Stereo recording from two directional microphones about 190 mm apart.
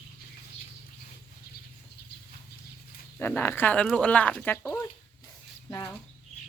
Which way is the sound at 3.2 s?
10° left (ahead or behind).